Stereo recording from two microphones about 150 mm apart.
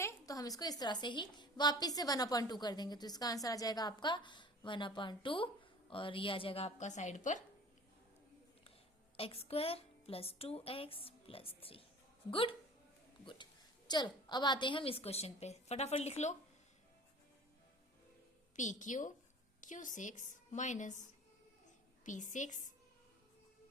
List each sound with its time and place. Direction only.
0.0 s a woman's voice: 20° left (ahead or behind); by 7.4 s 55° left (ahead or behind)
9.1 s a woman's voice: 40° left (ahead or behind)
18.5 s a woman's voice: 55° left (ahead or behind)
22.0 s a woman's voice: 55° left (ahead or behind)